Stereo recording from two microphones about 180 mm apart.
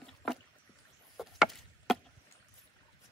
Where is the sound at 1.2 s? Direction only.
Centre (ahead or behind).